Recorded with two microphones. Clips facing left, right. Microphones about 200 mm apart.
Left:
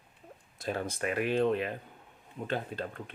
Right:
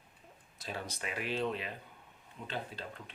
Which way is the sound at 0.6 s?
50° left (ahead or behind).